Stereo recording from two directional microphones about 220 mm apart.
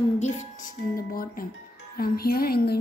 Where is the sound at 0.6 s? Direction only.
40° left (ahead or behind).